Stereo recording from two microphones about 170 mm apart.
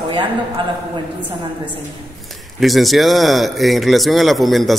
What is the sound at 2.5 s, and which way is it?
A man's voice, centre (ahead or behind).